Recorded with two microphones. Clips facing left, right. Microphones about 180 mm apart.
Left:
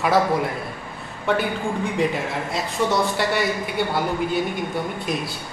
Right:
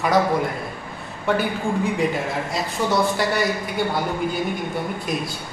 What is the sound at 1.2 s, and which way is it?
A man's voice, centre (ahead or behind).